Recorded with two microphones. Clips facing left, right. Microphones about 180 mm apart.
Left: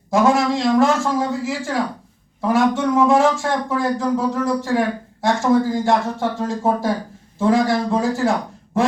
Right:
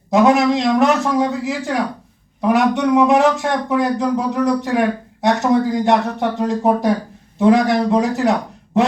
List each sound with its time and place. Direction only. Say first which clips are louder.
0.1 s a man's voice: right 3 dB; 20° right (ahead or behind)